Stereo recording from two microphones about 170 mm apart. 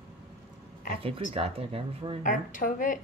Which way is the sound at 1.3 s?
35° right (ahead or behind).